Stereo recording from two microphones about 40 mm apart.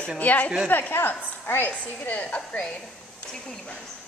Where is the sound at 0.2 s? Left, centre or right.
Left.